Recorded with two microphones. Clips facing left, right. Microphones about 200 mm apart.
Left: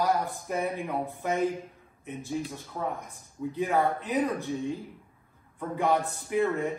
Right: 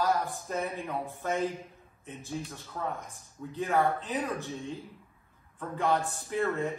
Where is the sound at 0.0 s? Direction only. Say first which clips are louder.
Left 2 dB; 15° left (ahead or behind).